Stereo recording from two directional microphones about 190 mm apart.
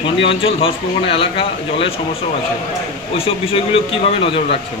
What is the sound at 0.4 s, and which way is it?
Speech, 30° left (ahead or behind).